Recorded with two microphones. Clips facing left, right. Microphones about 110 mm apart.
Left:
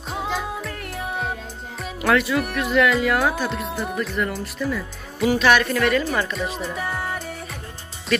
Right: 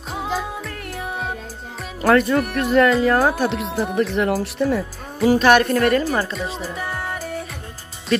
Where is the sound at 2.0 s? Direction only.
40° right (ahead or behind).